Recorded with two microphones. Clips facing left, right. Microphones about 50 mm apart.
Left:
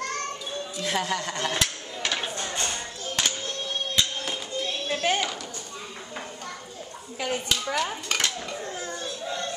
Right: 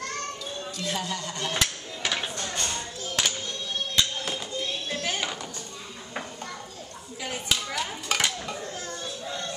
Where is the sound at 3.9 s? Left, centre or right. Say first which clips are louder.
Right 1 dB; centre.